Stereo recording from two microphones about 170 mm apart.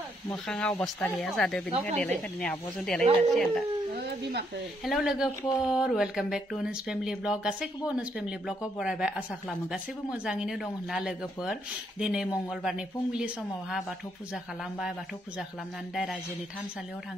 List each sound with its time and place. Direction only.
0.3 s speech: 5° left (ahead or behind)
3.9 s speech: 70° right (ahead or behind)
4.8 s speech: centre (ahead or behind)